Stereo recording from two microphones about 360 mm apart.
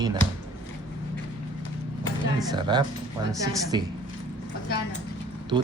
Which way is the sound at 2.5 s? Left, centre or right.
Centre.